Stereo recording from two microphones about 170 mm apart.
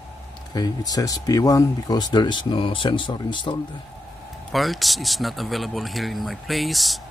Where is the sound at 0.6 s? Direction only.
20° left (ahead or behind).